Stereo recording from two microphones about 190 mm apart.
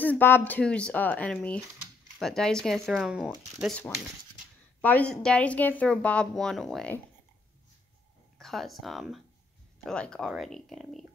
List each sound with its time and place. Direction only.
0.0 s a woman's voice: 10° left (ahead or behind)
4.8 s a woman's voice: 5° left (ahead or behind)
8.4 s a woman's voice: centre (ahead or behind)